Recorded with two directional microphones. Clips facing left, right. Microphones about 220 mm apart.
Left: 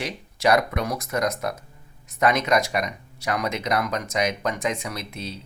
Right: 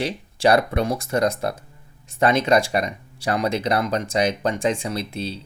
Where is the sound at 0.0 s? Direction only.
30° right (ahead or behind).